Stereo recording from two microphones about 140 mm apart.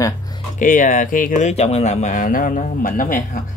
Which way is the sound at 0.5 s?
70° left (ahead or behind).